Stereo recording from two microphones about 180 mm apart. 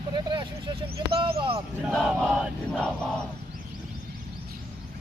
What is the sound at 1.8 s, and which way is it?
Crowd, centre (ahead or behind).